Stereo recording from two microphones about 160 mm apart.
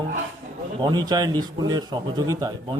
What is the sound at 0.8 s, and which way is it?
A man's voice, 25° right (ahead or behind).